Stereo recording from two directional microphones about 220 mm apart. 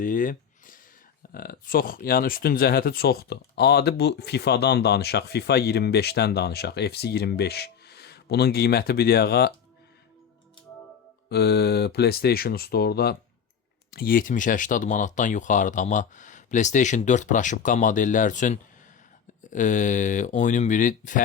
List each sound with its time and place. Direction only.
0.0 s speech: 40° left (ahead or behind)
11.3 s speech: 45° left (ahead or behind)